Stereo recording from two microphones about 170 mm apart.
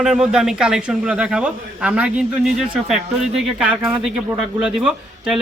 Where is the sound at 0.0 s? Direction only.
5° right (ahead or behind).